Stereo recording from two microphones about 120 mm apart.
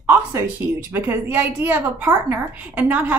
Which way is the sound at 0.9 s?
15° right (ahead or behind).